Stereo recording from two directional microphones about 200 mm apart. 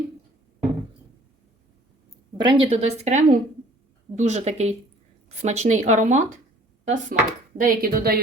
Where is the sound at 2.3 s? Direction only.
25° right (ahead or behind); by 8.2 s 50° right (ahead or behind).